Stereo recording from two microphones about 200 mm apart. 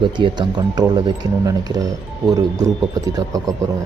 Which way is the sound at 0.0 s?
25° right (ahead or behind).